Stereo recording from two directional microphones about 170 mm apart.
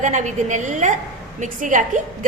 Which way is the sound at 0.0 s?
45° right (ahead or behind).